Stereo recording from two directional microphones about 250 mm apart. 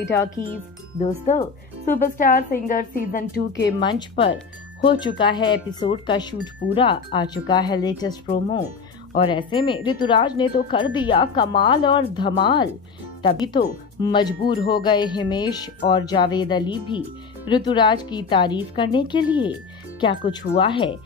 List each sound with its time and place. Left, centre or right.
0.9 s a woman's voice: left
3.8 s a woman's voice: centre